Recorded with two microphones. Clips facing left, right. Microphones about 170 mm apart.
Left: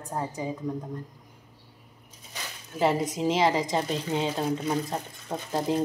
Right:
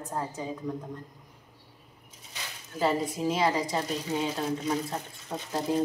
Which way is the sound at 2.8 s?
20° left (ahead or behind).